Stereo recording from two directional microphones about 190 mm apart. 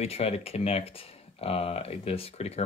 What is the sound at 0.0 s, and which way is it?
Speech, 35° left (ahead or behind).